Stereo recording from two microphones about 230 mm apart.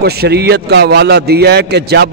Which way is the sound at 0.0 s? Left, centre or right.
Right.